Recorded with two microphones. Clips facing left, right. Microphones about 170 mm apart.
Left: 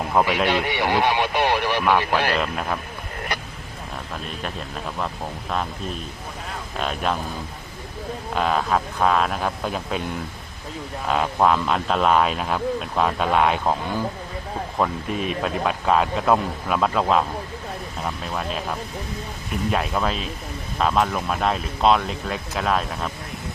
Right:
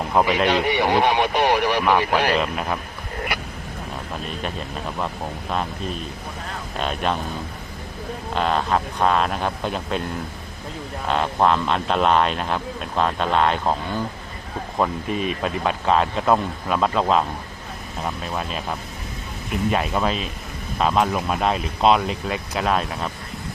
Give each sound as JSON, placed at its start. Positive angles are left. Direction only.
{"t": 0.1, "sound": "a man's voice", "side_deg": -15}
{"t": 2.4, "sound": "speech", "side_deg": -5}
{"t": 4.4, "sound": "speech", "side_deg": 0}
{"t": 6.7, "sound": "speech", "side_deg": 0}
{"t": 8.3, "sound": "speech", "side_deg": 5}
{"t": 11.1, "sound": "speech", "side_deg": 5}
{"t": 14.8, "sound": "speech", "side_deg": 0}
{"t": 19.7, "sound": "speech", "side_deg": -5}